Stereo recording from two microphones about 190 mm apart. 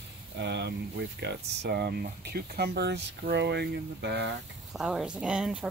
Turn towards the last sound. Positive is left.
turn(degrees=-5)  # may be behind; listen again after turning